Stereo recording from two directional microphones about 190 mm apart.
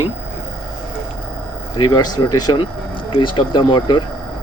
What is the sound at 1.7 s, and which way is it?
Speech, 25° left (ahead or behind).